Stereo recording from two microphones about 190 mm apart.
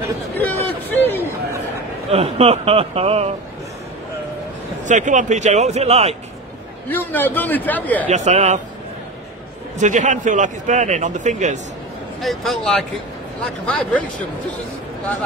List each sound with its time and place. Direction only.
0.4 s a sound: 10° left (ahead or behind)
2.0 s speech: 35° right (ahead or behind)
4.8 s speech: 40° right (ahead or behind)
6.9 s a man's voice: 10° left (ahead or behind)
8.1 s speech: 35° right (ahead or behind)
9.8 s speech: 40° right (ahead or behind)
12.2 s speech: centre (ahead or behind)